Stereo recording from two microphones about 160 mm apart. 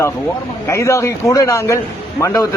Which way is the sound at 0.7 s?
20° left (ahead or behind).